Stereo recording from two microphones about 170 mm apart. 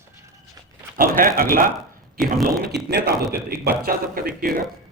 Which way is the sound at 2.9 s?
65° right (ahead or behind).